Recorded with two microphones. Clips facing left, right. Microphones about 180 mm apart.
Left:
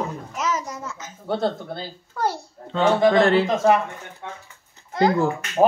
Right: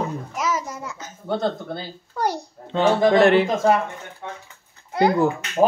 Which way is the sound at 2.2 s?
15° right (ahead or behind).